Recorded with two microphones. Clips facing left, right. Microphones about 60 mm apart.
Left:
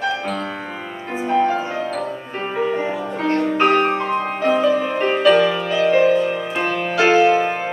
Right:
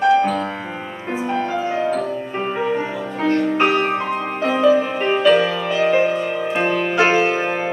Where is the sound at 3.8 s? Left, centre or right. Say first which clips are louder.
Left 1 dB; centre; by 7.5 s right.